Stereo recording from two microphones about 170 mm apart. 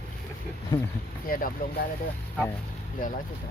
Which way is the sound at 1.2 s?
55° left (ahead or behind).